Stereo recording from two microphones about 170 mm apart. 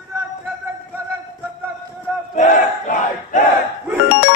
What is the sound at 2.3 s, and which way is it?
Battle cry, 50° left (ahead or behind).